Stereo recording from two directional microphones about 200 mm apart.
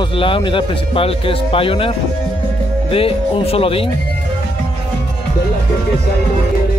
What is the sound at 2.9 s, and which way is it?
Speech, 30° left (ahead or behind).